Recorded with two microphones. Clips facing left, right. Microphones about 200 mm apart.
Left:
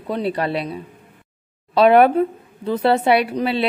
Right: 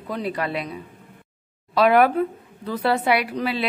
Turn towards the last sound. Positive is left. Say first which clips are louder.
# left 5 dB
turn(degrees=25)  # may be behind; listen again after turning